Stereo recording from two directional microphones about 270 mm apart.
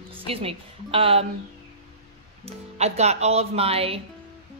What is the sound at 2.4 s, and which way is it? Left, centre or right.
Speech, right.